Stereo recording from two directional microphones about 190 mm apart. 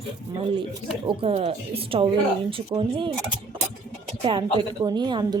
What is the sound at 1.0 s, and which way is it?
Speech, 30° right (ahead or behind).